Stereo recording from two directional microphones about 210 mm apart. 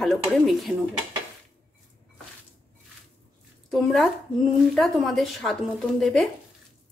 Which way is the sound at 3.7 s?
Centre (ahead or behind).